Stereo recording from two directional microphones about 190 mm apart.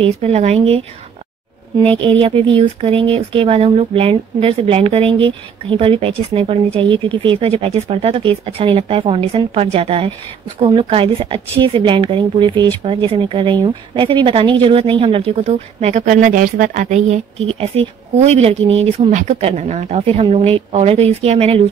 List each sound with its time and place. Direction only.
0.0 s speech: 35° right (ahead or behind)
2.0 s speech: 30° right (ahead or behind)